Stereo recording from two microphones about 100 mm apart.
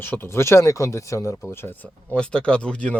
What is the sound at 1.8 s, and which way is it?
Speech, 10° left (ahead or behind).